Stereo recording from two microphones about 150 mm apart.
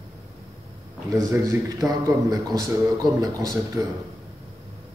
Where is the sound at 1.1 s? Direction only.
20° right (ahead or behind).